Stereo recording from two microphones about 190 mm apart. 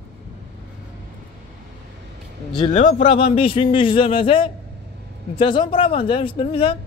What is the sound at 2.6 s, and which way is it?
Speech, 35° left (ahead or behind).